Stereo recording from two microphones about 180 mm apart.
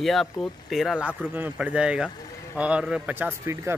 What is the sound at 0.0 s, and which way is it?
Speech, centre (ahead or behind).